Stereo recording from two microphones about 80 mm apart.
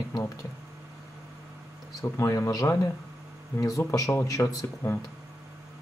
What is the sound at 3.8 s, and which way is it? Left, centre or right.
Speech, left.